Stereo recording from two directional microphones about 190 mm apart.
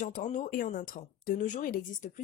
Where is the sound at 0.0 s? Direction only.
40° left (ahead or behind).